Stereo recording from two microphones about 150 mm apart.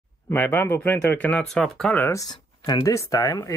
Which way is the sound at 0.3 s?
15° left (ahead or behind).